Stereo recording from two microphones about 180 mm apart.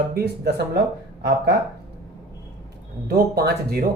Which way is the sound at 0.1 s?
60° right (ahead or behind).